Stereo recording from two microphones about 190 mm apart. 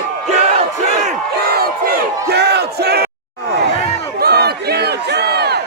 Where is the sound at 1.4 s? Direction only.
55° right (ahead or behind).